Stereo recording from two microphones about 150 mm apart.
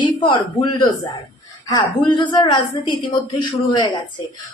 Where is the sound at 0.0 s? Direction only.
35° left (ahead or behind).